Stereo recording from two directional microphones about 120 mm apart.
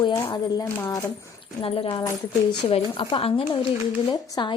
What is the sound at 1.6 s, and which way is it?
A woman's voice, 50° left (ahead or behind).